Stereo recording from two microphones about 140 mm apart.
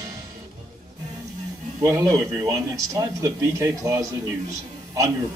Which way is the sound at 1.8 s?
25° right (ahead or behind).